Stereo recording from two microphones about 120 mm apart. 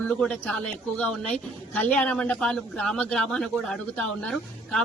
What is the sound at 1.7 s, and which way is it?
A woman's voice, 10° left (ahead or behind).